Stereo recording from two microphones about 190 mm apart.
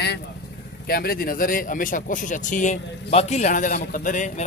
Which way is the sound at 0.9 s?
50° left (ahead or behind).